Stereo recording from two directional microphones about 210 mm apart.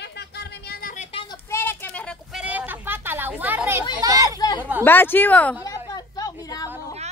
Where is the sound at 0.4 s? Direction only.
50° left (ahead or behind).